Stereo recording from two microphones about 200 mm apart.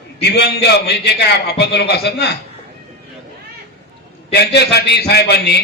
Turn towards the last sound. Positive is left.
turn(degrees=55)  # may be behind; listen again after turning